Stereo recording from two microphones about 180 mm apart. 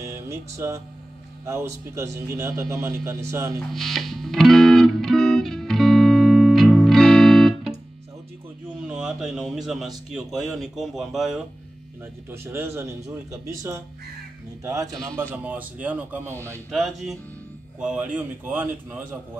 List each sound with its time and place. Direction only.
0.0 s music: 15° right (ahead or behind)
1.4 s speech: 15° right (ahead or behind)
3.7 s music: centre (ahead or behind)
8.8 s speech: 5° right (ahead or behind)
12.3 s speech: 15° right (ahead or behind)